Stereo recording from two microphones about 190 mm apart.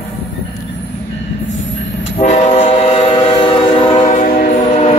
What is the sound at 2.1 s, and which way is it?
Train, 35° left (ahead or behind).